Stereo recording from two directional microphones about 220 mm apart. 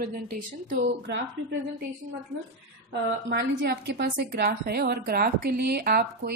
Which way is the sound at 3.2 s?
50° right (ahead or behind).